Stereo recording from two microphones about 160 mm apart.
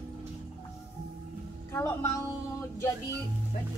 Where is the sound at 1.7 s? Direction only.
15° left (ahead or behind).